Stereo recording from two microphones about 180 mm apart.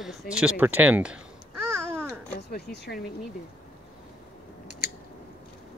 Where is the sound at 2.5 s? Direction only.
65° left (ahead or behind).